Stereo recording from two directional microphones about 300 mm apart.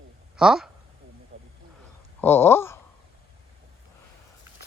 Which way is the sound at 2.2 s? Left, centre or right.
Centre.